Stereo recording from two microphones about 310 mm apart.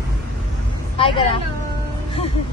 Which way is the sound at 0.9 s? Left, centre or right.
Centre.